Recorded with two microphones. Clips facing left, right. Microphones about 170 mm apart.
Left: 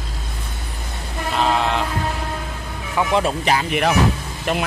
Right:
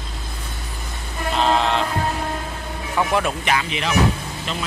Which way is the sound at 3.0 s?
20° left (ahead or behind).